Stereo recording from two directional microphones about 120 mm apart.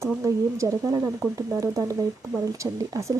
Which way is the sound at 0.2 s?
25° right (ahead or behind).